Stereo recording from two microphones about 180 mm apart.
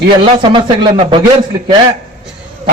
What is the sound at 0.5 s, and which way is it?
Speech, 30° right (ahead or behind).